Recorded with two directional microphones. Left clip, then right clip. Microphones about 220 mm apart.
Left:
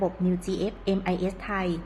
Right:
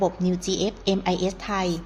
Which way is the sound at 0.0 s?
25° right (ahead or behind).